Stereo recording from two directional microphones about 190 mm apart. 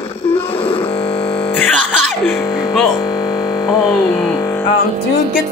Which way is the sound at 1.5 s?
10° left (ahead or behind).